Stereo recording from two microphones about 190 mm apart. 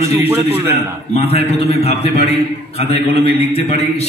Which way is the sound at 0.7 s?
30° left (ahead or behind).